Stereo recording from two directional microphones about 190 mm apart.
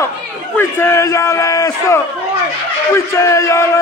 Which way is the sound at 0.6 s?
10° left (ahead or behind).